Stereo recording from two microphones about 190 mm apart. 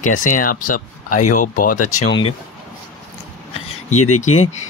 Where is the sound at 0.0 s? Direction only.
45° left (ahead or behind).